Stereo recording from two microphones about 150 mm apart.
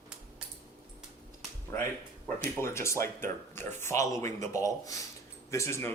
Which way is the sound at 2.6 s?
20° left (ahead or behind).